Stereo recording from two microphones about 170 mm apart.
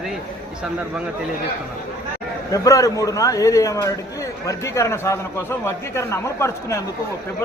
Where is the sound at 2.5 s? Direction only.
20° left (ahead or behind).